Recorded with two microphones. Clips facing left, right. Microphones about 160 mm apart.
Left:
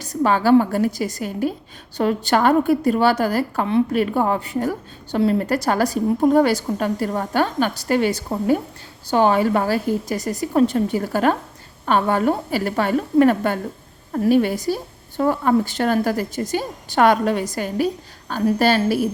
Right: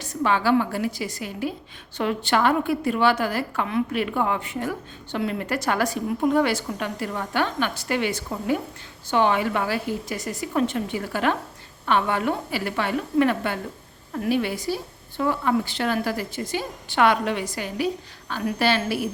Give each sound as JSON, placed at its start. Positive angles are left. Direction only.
{"t": 0.0, "sound": "a woman's voice", "side_deg": 40}